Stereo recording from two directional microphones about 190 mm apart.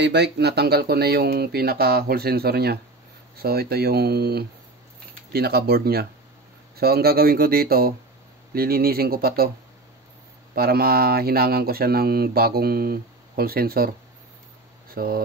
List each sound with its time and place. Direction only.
0.0 s speech: 65° right (ahead or behind)
10.5 s speech: 55° right (ahead or behind)
15.0 s speech: 50° right (ahead or behind)